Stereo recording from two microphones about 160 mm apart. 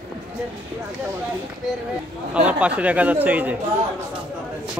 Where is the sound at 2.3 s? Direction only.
10° right (ahead or behind).